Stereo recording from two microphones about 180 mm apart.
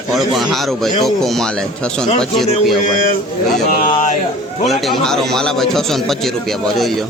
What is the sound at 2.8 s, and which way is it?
A man's voice, 45° left (ahead or behind).